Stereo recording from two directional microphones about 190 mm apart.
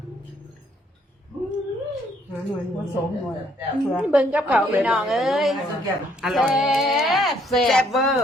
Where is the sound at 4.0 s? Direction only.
5° right (ahead or behind).